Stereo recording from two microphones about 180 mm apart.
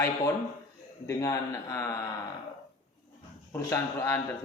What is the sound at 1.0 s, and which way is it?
A man's voice, 15° left (ahead or behind).